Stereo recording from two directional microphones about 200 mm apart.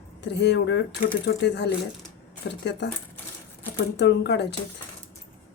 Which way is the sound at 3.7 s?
55° left (ahead or behind).